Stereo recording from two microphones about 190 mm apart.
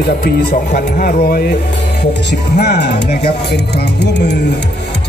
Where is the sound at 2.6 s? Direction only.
60° left (ahead or behind).